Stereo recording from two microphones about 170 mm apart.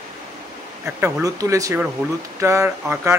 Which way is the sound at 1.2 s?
20° right (ahead or behind).